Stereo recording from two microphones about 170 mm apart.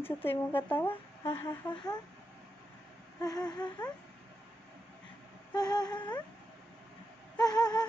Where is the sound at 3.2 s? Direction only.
25° left (ahead or behind).